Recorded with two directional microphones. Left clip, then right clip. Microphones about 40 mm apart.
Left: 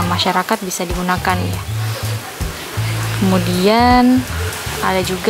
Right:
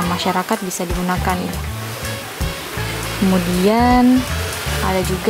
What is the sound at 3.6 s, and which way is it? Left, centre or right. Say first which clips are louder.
Speech: left 3 dB; centre.